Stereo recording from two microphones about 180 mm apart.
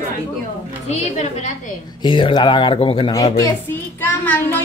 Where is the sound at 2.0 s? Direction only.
25° left (ahead or behind).